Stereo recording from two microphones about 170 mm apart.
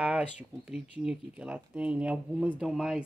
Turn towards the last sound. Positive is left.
turn(degrees=0)  # may be behind; listen again after turning